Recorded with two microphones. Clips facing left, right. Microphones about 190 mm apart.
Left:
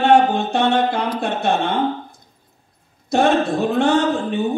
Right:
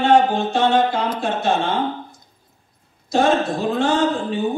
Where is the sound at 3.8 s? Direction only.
60° left (ahead or behind).